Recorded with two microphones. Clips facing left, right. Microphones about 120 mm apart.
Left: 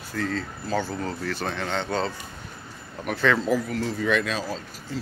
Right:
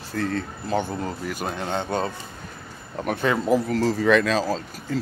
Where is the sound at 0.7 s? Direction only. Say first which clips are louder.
Right 2 dB; 20° right (ahead or behind).